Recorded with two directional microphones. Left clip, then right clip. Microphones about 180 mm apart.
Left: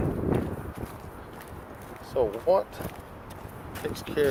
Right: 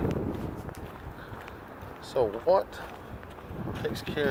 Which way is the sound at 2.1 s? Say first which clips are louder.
Left 1 dB; 10° right (ahead or behind).